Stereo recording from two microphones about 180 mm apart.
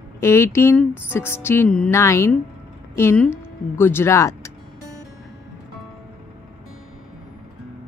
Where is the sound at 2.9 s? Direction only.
10° left (ahead or behind).